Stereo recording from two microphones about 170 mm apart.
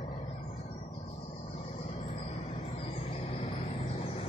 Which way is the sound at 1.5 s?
35° left (ahead or behind).